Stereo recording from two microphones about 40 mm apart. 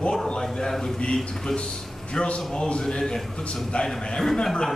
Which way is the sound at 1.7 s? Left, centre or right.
Centre.